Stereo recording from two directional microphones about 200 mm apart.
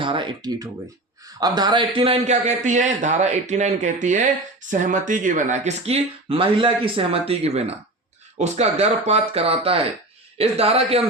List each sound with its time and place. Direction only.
0.0 s a man's voice: 25° right (ahead or behind)